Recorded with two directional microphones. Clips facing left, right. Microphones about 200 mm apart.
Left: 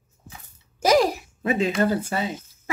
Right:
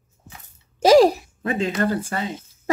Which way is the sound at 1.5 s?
10° left (ahead or behind).